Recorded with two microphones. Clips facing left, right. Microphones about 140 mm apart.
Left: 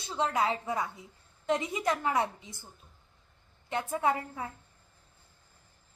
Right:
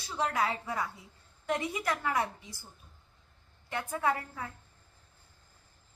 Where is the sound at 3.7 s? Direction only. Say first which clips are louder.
Left 2 dB; 20° left (ahead or behind).